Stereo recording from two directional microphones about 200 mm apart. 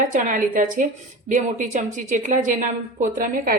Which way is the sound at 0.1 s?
40° right (ahead or behind).